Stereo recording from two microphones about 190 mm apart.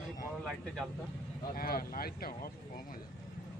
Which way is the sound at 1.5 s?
50° left (ahead or behind).